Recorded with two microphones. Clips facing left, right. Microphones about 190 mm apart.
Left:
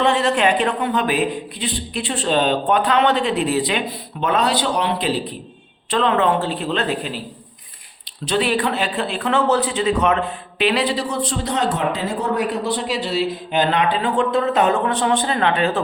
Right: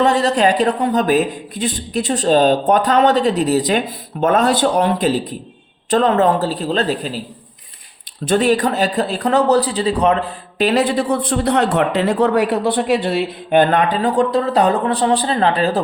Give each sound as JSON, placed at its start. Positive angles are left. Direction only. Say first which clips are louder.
{"t": 0.0, "sound": "a man's voice", "louder": "right 3 dB", "side_deg": -40}
{"t": 8.2, "sound": "a man's voice", "louder": "right 5 dB", "side_deg": -45}